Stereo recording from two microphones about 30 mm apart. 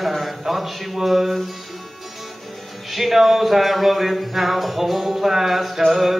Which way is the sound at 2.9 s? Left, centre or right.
Centre.